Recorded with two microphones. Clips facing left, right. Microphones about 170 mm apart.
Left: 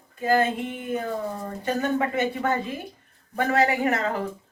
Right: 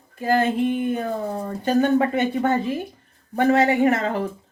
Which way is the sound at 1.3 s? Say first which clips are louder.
Right 6 dB; 35° right (ahead or behind).